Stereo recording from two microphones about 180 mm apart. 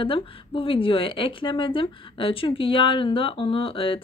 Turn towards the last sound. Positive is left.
turn(degrees=30)  # may be behind; listen again after turning